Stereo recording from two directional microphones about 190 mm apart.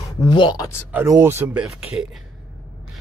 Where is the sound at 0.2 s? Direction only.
25° left (ahead or behind).